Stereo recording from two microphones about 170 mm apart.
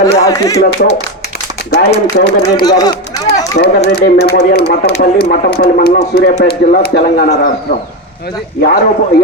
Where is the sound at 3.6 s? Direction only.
65° left (ahead or behind).